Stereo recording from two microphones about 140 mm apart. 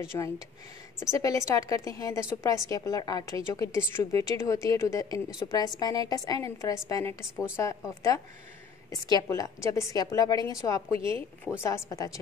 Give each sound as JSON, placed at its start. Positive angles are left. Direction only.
{"t": 0.1, "sound": "a woman's voice", "side_deg": 25}